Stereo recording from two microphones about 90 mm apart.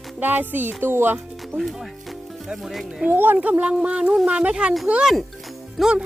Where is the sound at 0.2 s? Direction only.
20° right (ahead or behind).